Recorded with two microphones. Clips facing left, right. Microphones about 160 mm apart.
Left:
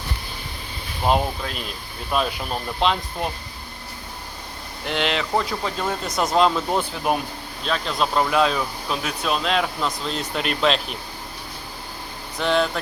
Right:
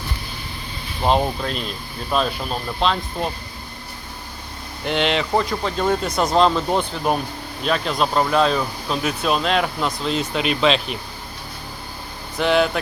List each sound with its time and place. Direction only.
1.0 s speech: 5° left (ahead or behind)
2.8 s speech: 15° left (ahead or behind)
4.9 s speech: centre (ahead or behind)
12.4 s speech: 5° right (ahead or behind)